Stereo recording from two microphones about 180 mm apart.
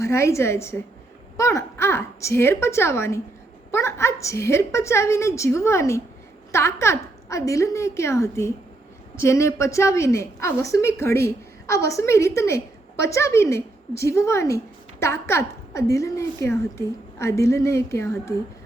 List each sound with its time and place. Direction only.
0.0 s a woman's voice: 15° left (ahead or behind)